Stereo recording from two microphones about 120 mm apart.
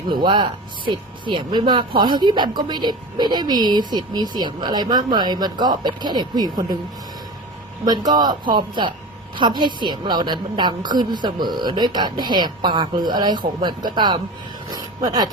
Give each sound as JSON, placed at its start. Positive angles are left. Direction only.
{"t": 0.1, "sound": "speech", "side_deg": -40}
{"t": 7.9, "sound": "speech", "side_deg": -35}
{"t": 14.7, "sound": "a sound", "side_deg": -30}